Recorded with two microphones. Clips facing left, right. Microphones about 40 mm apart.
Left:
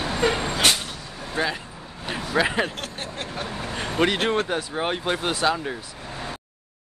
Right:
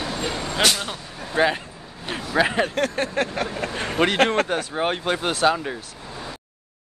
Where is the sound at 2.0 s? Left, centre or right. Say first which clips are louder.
Right 2 dB; centre.